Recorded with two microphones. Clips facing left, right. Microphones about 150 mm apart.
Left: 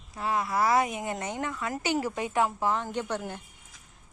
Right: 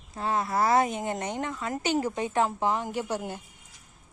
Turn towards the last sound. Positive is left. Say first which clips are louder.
# right 1 dB
turn(degrees=-10)  # may be behind; listen again after turning